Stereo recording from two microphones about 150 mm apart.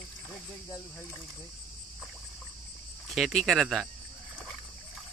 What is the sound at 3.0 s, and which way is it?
Speech, centre (ahead or behind).